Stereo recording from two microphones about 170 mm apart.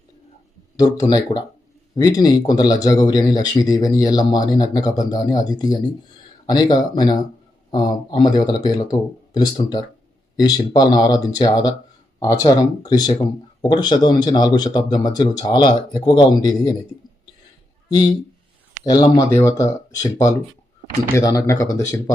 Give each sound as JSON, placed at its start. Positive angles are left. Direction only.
{"t": 0.8, "sound": "speech", "side_deg": 20}
{"t": 18.9, "sound": "speech", "side_deg": 25}